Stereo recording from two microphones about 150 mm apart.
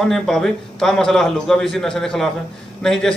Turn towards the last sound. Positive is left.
turn(degrees=5)  # may be behind; listen again after turning